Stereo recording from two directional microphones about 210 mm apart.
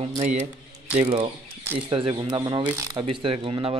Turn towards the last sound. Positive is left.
turn(degrees=-25)  # may be behind; listen again after turning